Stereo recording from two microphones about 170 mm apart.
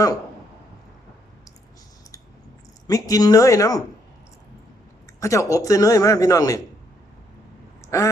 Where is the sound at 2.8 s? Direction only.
20° left (ahead or behind).